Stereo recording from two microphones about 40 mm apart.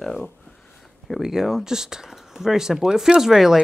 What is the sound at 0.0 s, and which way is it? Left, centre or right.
Speech, centre.